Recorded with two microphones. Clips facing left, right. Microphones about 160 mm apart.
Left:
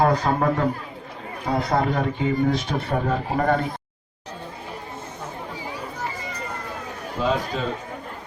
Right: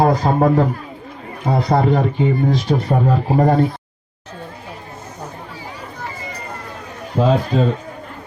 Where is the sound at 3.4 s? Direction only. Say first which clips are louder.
Right 7 dB; 35° right (ahead or behind).